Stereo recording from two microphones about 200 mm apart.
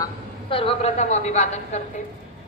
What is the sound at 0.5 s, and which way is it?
A woman's voice, 30° left (ahead or behind).